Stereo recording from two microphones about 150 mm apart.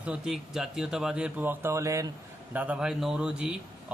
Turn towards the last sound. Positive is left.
turn(degrees=-5)  # may be behind; listen again after turning